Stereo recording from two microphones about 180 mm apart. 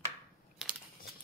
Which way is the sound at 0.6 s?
Centre (ahead or behind).